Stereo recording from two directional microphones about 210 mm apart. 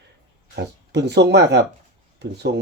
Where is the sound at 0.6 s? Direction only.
55° right (ahead or behind).